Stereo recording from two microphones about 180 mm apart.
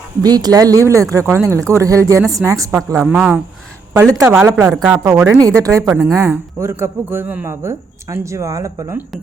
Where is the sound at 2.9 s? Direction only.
5° right (ahead or behind).